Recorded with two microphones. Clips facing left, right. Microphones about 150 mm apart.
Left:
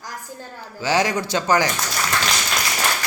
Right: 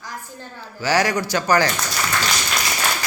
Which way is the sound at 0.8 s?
20° left (ahead or behind).